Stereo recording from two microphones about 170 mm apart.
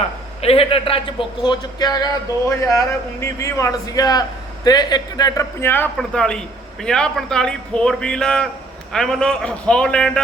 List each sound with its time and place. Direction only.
0.4 s a man's voice: 35° left (ahead or behind); by 10.2 s 5° left (ahead or behind)